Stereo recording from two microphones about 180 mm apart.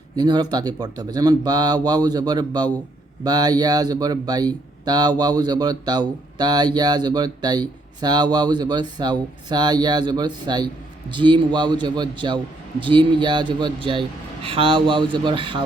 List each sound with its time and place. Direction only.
0.2 s speech: 25° right (ahead or behind)